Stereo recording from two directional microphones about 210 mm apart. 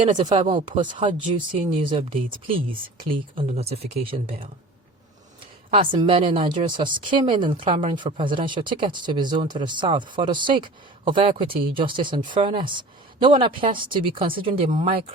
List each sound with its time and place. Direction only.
0.3 s speech: 35° right (ahead or behind)
0.5 s speech: 20° right (ahead or behind)
5.7 s speech: 25° right (ahead or behind)